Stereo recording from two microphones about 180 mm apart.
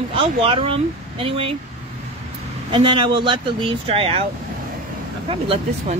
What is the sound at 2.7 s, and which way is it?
Speech, 25° right (ahead or behind).